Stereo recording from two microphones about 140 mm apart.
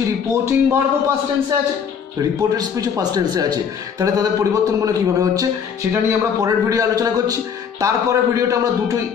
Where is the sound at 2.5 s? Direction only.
25° right (ahead or behind).